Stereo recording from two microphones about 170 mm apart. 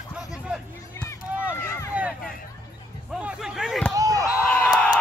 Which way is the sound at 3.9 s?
20° right (ahead or behind).